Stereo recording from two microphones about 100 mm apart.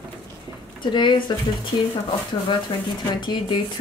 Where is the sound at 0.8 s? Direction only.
50° left (ahead or behind).